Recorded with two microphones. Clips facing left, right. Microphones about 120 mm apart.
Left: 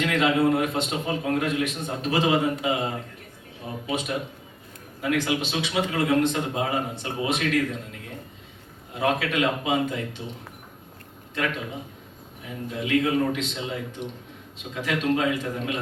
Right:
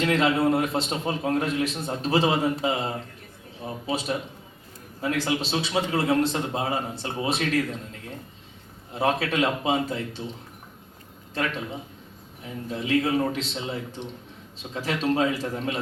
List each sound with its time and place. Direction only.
0.0 s a man's voice: 30° right (ahead or behind)
9.0 s a man's voice: 30° right (ahead or behind)
12.4 s a man's voice: 30° right (ahead or behind)